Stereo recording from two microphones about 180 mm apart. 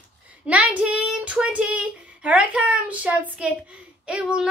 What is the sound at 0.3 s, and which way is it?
Speech, 10° right (ahead or behind).